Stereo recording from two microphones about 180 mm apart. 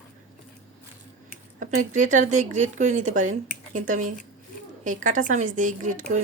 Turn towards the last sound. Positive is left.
turn(degrees=-45)  # may be behind; listen again after turning